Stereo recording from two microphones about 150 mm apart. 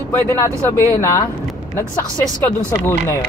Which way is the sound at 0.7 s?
20° left (ahead or behind).